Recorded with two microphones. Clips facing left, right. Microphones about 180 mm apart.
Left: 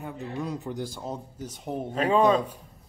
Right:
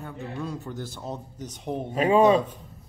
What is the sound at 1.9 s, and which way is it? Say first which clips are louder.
Speech: right 3 dB; 10° right (ahead or behind).